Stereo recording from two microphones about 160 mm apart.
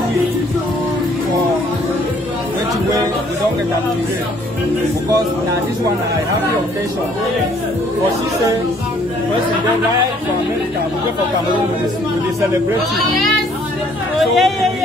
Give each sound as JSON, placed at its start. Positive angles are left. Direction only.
{"t": 14.2, "sound": "vehicle", "side_deg": 0}